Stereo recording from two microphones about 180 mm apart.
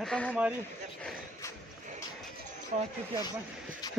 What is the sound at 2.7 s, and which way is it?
Speech, 35° right (ahead or behind).